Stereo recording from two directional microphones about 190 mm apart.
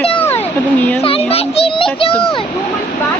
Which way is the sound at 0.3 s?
10° left (ahead or behind).